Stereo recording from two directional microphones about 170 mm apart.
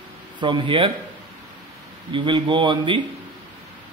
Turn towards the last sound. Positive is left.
turn(degrees=-30)  # may be behind; listen again after turning